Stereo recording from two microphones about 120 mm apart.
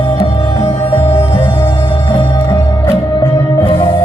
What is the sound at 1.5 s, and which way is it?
Music, 40° left (ahead or behind).